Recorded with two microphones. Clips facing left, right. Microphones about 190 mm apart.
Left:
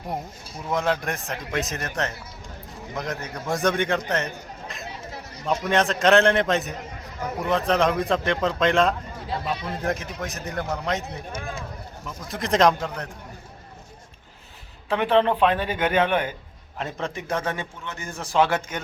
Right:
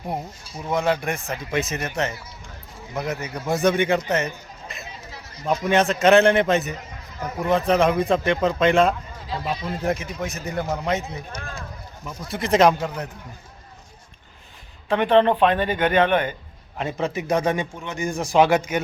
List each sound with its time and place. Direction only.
0.1 s speech: centre (ahead or behind)
5.5 s speech: centre (ahead or behind)
14.8 s speech: centre (ahead or behind)
16.7 s a man's voice: 5° right (ahead or behind)